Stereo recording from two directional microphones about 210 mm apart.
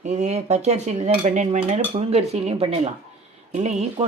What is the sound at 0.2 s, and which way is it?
Cutlery, 30° right (ahead or behind).